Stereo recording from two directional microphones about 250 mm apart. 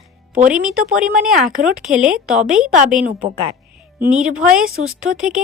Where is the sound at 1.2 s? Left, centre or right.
Centre.